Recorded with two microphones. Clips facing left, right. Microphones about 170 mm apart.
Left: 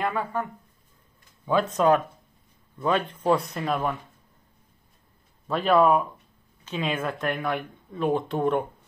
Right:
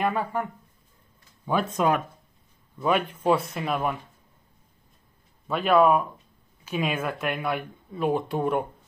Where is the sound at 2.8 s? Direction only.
10° right (ahead or behind).